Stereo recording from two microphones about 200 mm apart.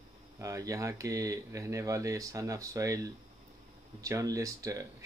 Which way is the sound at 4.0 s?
15° right (ahead or behind).